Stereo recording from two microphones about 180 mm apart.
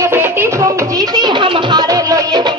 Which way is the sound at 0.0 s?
15° right (ahead or behind).